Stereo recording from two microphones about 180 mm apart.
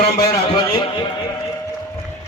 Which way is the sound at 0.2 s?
25° left (ahead or behind).